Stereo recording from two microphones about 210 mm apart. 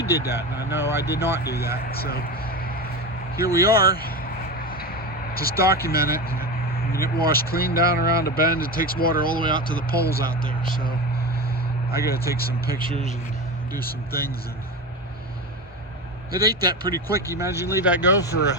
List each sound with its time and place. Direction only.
0.0 s speech: 50° left (ahead or behind)
2.0 s a sound: 45° left (ahead or behind)
3.3 s vehicle: 45° left (ahead or behind)
6.9 s speech: 45° left (ahead or behind)
16.4 s speech: 20° right (ahead or behind)
16.8 s speech: 45° left (ahead or behind)
17.3 s speech: 15° right (ahead or behind)